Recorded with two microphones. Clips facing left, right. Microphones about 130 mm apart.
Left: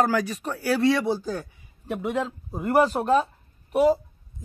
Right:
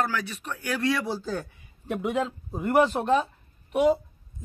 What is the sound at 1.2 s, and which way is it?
Speech, 10° left (ahead or behind).